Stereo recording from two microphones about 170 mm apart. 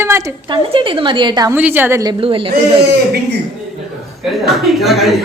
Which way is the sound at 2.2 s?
30° right (ahead or behind).